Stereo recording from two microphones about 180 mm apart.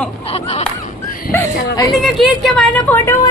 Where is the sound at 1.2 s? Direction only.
15° left (ahead or behind).